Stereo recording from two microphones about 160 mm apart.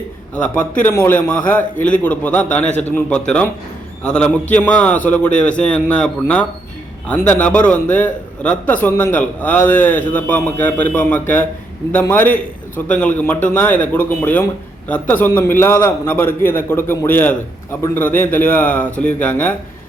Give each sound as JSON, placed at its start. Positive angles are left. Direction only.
{"t": 0.4, "sound": "a man's voice", "side_deg": 50}
{"t": 0.8, "sound": "a man's voice", "side_deg": 15}